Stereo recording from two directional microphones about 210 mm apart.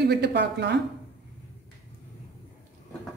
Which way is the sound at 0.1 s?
55° right (ahead or behind).